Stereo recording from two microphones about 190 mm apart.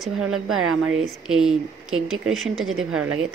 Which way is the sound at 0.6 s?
90° right.